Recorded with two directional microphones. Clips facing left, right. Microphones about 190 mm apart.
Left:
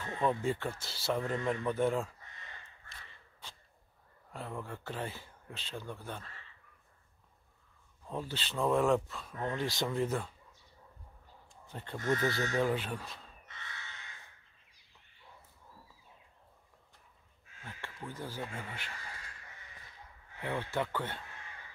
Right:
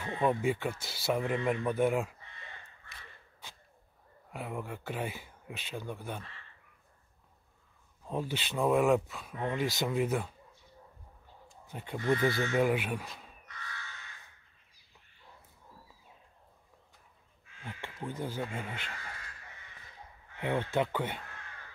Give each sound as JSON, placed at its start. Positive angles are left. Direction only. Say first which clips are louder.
{"t": 0.0, "sound": "speech", "louder": "right 3 dB", "side_deg": -15}
{"t": 4.3, "sound": "speech", "louder": "right 3 dB", "side_deg": -10}
{"t": 8.1, "sound": "speech", "louder": "right 4 dB", "side_deg": -15}
{"t": 11.6, "sound": "speech", "louder": "right 3 dB", "side_deg": -10}
{"t": 13.5, "sound": "crow", "louder": "right 4 dB", "side_deg": 25}
{"t": 17.6, "sound": "speech", "louder": "right 5 dB", "side_deg": -20}
{"t": 20.3, "sound": "speech", "louder": "right 5 dB", "side_deg": -20}